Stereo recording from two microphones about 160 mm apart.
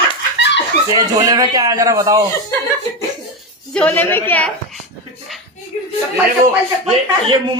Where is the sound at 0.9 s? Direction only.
20° right (ahead or behind).